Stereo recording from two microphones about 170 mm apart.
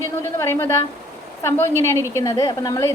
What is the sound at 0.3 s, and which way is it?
A woman's voice, 15° left (ahead or behind).